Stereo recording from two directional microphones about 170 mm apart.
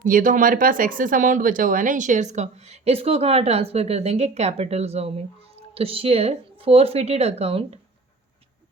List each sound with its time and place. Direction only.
0.0 s speech: 50° right (ahead or behind); by 7.8 s 35° right (ahead or behind)